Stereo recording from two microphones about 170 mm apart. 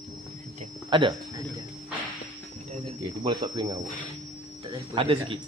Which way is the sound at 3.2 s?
25° right (ahead or behind).